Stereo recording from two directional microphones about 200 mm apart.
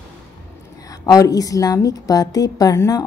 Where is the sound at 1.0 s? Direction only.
15° left (ahead or behind).